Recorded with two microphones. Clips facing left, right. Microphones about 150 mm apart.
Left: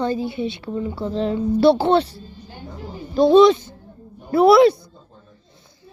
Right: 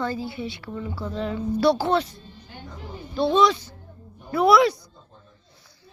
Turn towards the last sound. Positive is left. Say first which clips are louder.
# left 6 dB
turn(degrees=30)  # may be behind; listen again after turning